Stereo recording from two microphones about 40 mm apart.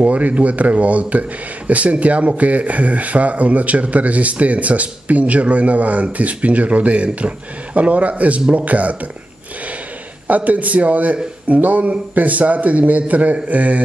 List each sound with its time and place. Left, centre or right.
0.0 s speech: right
10.2 s speech: right